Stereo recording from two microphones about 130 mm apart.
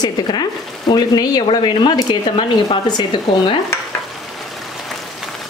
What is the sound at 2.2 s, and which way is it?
Speech, 45° left (ahead or behind).